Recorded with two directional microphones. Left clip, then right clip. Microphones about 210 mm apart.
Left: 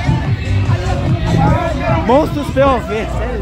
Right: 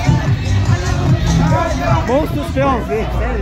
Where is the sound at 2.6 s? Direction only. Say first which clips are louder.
Left 4 dB; 20° left (ahead or behind).